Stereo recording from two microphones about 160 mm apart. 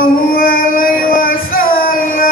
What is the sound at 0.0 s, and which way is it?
Music, 65° left (ahead or behind).